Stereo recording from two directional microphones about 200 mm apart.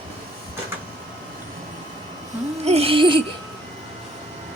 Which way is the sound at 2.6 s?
30° right (ahead or behind).